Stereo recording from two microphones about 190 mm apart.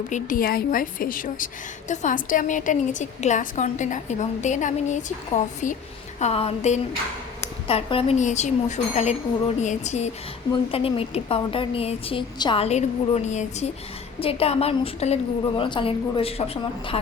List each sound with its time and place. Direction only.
0.1 s a woman's voice: 45° left (ahead or behind); by 17.1 s 30° left (ahead or behind)